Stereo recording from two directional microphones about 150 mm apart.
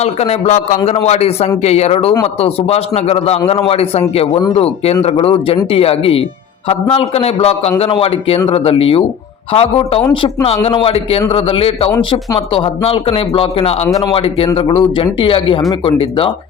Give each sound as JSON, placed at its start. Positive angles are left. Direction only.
{"t": 0.0, "sound": "a man's voice", "side_deg": 45}
{"t": 13.8, "sound": "speech", "side_deg": 25}
{"t": 14.1, "sound": "speech", "side_deg": 40}